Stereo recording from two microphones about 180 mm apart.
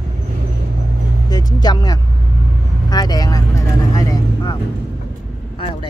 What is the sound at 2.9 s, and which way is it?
Vehicle, 20° left (ahead or behind).